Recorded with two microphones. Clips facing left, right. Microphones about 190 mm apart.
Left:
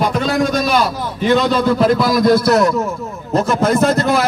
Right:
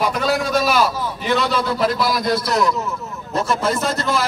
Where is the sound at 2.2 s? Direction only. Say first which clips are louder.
Left 7 dB; 50° left (ahead or behind).